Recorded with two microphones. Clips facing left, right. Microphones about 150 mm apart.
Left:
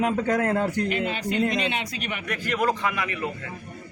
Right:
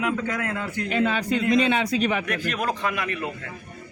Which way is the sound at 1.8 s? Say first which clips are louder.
Right 8 dB; 90° right.